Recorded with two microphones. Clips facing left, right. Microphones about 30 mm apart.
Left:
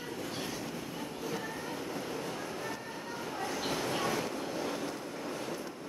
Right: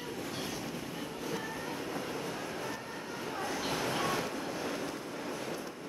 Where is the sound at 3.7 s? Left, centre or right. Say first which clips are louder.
Even; right.